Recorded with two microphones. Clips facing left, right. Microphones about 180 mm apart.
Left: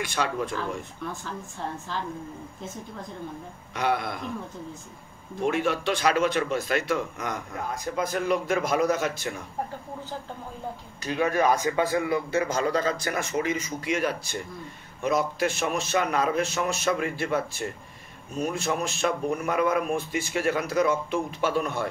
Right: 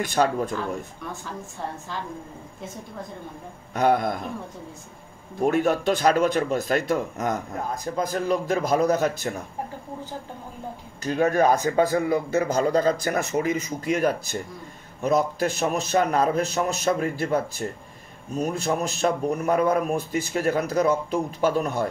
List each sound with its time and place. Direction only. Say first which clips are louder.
0.1 s speech: right 8 dB; 40° right (ahead or behind)
3.7 s speech: right 6 dB; 45° right (ahead or behind)
5.4 s speech: right 4 dB; 40° right (ahead or behind)
11.1 s speech: right 3 dB; 45° right (ahead or behind)